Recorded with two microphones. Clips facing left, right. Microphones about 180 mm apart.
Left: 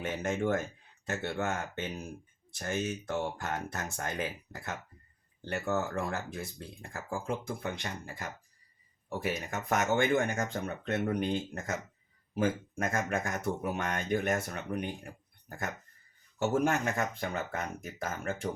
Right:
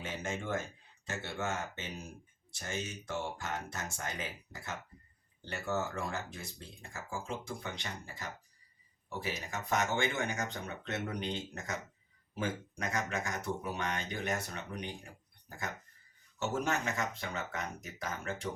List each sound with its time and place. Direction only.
0.0 s speech: 55° left (ahead or behind)